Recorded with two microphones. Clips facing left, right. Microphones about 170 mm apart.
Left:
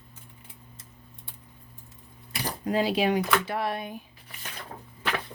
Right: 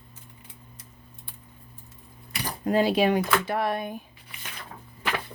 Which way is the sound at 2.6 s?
50° right (ahead or behind).